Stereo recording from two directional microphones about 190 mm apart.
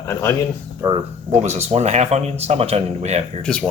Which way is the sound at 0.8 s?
15° right (ahead or behind).